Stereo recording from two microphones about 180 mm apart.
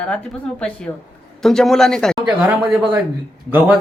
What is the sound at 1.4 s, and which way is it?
A woman's voice, centre (ahead or behind).